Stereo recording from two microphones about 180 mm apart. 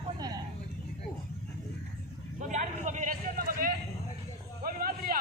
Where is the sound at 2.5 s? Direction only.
40° right (ahead or behind).